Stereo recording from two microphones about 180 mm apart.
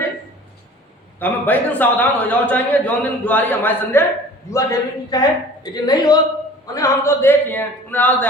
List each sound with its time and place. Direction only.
1.2 s a man's voice: 10° left (ahead or behind)